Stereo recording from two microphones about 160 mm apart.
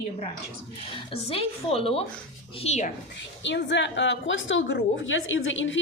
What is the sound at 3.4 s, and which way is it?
Speech, 90° left.